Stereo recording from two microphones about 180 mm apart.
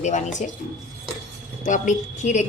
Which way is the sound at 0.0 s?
40° left (ahead or behind).